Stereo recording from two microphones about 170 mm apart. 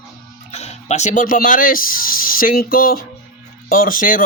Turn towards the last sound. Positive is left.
turn(degrees=50)  # may be behind; listen again after turning